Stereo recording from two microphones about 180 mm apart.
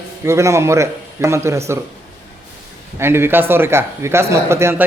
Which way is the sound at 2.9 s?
15° right (ahead or behind).